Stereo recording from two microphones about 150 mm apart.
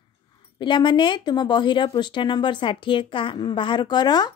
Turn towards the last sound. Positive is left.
turn(degrees=30)  # may be behind; listen again after turning